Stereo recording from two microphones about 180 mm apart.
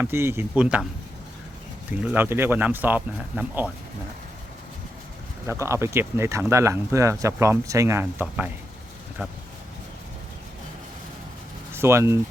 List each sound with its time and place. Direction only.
0.0 s speech: 15° right (ahead or behind)
2.0 s speech: 10° right (ahead or behind)
5.5 s speech: 15° right (ahead or behind)
11.7 s speech: 15° right (ahead or behind)